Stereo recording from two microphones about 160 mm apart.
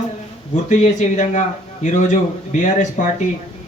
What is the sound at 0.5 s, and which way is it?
Speech, 50° left (ahead or behind).